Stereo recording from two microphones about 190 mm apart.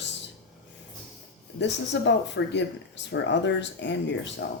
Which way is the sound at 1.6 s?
70° left (ahead or behind).